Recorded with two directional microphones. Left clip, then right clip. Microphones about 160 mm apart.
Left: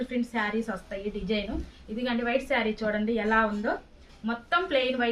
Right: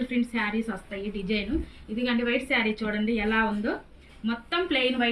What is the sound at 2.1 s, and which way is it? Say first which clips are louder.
A woman's voice: right 1 dB; 50° left (ahead or behind).